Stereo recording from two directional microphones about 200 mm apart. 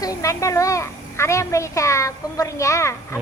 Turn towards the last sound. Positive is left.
turn(degrees=15)  # may be behind; listen again after turning